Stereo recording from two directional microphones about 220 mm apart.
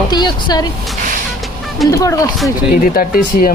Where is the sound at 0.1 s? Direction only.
20° left (ahead or behind).